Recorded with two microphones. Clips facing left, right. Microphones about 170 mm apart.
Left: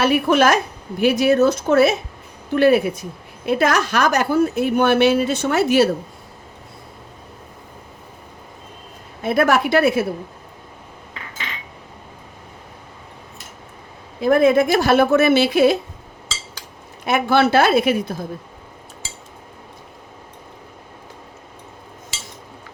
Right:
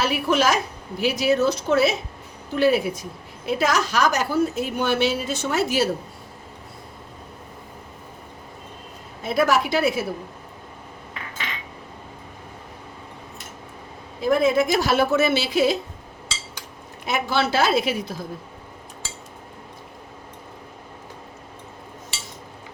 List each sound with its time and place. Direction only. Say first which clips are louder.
0.0 s a woman's voice: left 5 dB; 55° left (ahead or behind)
9.2 s a woman's voice: left 3 dB; 60° left (ahead or behind)
14.2 s a woman's voice: left 5 dB; 55° left (ahead or behind)
17.1 s a woman's voice: left 7 dB; 55° left (ahead or behind)